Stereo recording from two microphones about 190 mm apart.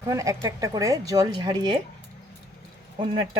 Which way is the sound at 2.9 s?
25° right (ahead or behind).